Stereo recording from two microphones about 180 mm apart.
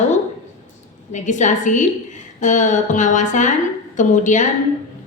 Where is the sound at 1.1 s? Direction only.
40° left (ahead or behind).